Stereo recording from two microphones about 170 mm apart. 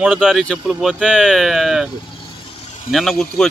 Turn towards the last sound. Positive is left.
turn(degrees=5)  # may be behind; listen again after turning